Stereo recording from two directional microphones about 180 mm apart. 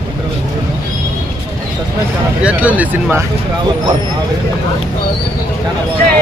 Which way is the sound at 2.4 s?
10° right (ahead or behind).